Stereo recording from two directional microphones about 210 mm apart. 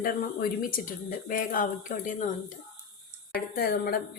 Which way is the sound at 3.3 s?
45° left (ahead or behind).